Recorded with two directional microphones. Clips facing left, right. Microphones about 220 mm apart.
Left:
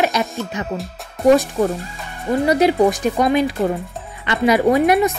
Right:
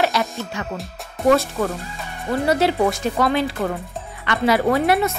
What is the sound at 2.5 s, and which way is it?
A woman's voice, 15° left (ahead or behind).